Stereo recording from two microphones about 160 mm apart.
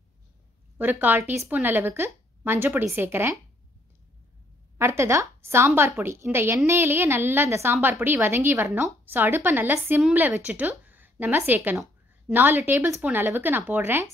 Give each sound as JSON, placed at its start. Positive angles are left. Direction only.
{"t": 0.7, "sound": "a woman's voice", "side_deg": -10}
{"t": 4.7, "sound": "a woman's voice", "side_deg": -15}